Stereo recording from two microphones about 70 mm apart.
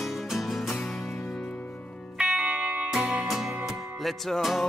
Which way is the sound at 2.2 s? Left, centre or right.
Centre.